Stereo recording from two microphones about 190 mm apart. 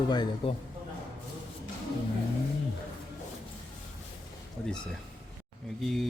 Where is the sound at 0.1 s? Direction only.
20° left (ahead or behind).